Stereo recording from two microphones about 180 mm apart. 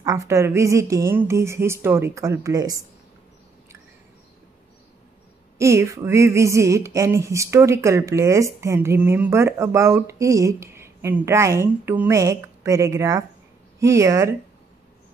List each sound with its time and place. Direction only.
0.0 s speech: 20° right (ahead or behind)
5.6 s speech: 15° right (ahead or behind)